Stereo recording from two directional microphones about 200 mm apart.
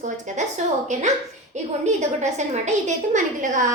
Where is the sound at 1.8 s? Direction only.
35° right (ahead or behind).